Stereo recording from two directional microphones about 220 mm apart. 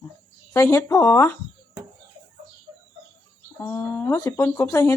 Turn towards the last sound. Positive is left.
turn(degrees=10)  # may be behind; listen again after turning